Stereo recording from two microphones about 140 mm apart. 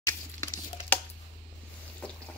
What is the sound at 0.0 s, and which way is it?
Crumpling, 20° left (ahead or behind).